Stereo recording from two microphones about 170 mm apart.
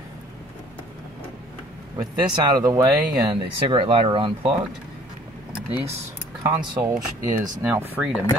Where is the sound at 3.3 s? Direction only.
30° right (ahead or behind).